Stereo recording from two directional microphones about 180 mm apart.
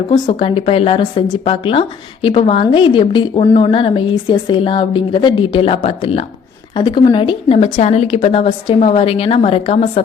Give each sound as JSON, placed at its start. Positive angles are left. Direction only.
{"t": 0.1, "sound": "a woman's voice", "side_deg": 30}